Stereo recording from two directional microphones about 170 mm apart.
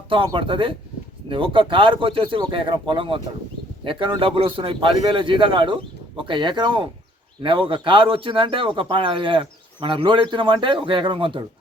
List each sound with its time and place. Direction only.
0.3 s a man's voice: 30° right (ahead or behind)